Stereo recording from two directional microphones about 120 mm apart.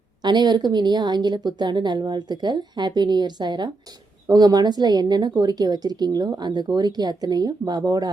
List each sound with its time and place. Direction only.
0.2 s a woman's voice: 35° right (ahead or behind)